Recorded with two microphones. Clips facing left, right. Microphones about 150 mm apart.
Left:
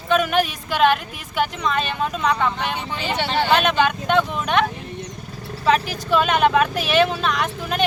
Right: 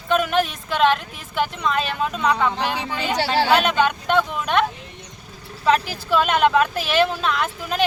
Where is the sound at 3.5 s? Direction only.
Centre (ahead or behind).